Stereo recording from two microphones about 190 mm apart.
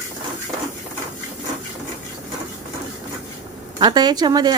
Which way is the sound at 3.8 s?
20° right (ahead or behind).